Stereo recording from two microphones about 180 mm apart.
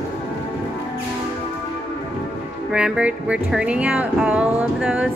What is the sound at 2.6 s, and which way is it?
Speech, 5° right (ahead or behind).